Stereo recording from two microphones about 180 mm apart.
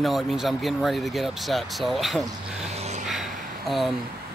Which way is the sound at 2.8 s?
40° right (ahead or behind).